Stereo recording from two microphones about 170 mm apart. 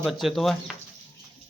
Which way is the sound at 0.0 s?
Centre (ahead or behind).